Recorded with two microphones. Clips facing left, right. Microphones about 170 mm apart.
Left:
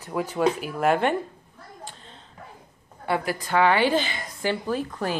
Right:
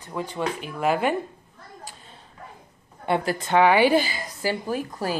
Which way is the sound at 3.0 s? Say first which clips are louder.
Right 2 dB; 25° right (ahead or behind).